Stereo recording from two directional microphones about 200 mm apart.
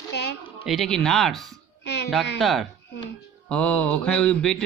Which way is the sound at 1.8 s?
55° left (ahead or behind).